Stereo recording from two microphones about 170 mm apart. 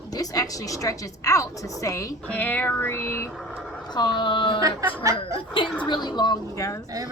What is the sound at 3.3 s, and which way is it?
Vehicle, centre (ahead or behind).